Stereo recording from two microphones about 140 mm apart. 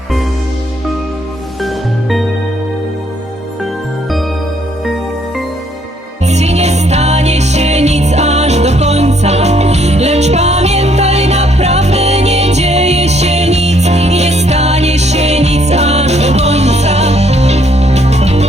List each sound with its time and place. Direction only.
1.6 s music: centre (ahead or behind)
6.2 s music: 50° right (ahead or behind)